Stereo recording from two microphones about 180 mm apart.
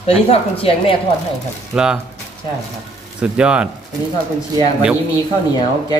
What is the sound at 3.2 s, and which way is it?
Speech, 5° right (ahead or behind).